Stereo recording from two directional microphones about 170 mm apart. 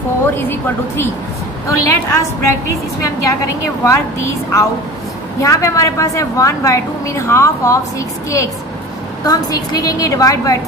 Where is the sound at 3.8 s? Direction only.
15° left (ahead or behind).